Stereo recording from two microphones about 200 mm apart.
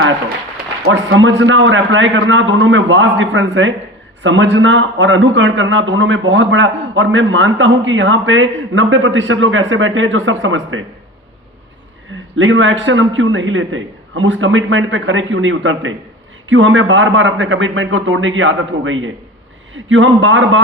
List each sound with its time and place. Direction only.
0.8 s a man's voice: 75° right (ahead or behind)
12.4 s a man's voice: 75° right (ahead or behind)